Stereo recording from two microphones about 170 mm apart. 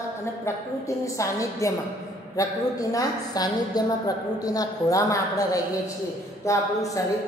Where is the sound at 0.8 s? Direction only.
20° left (ahead or behind).